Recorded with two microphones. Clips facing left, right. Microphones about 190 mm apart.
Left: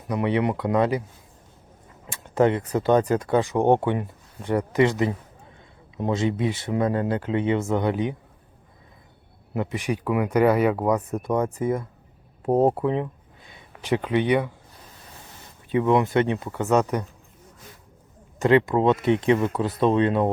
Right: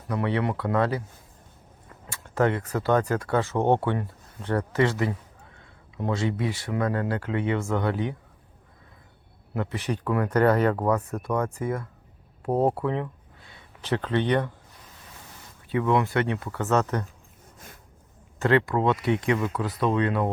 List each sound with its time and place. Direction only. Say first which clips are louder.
0.1 s speech: left 3 dB; 15° left (ahead or behind)
2.0 s speech: left 4 dB; 20° left (ahead or behind)
9.6 s speech: left 3 dB; 15° left (ahead or behind)
12.4 s a sound: left 4 dB; 20° left (ahead or behind)
13.8 s speech: left 3 dB; 15° left (ahead or behind)
15.7 s speech: left 4 dB; 20° left (ahead or behind)
18.3 s speech: left 4 dB; 15° left (ahead or behind)